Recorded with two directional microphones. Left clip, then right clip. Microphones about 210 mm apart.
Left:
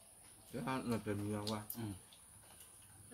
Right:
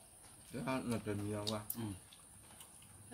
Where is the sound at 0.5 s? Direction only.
20° left (ahead or behind).